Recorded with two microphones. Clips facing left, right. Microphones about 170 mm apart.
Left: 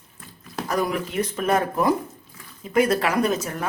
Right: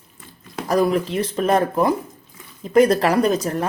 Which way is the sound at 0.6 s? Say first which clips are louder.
Right 6 dB; 30° right (ahead or behind).